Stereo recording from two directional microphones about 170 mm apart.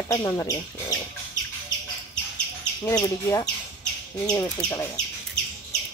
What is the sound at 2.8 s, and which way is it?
Speech, 15° left (ahead or behind).